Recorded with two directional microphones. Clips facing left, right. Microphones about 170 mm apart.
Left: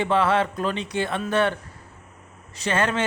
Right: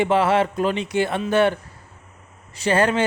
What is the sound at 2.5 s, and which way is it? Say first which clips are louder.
Speech: right 5 dB; 35° right (ahead or behind).